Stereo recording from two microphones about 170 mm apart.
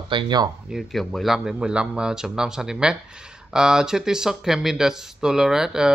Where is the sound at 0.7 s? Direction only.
Centre (ahead or behind).